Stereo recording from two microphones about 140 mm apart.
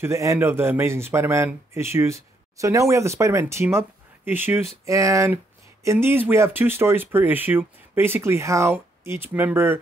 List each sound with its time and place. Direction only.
0.0 s a man's voice: 20° right (ahead or behind)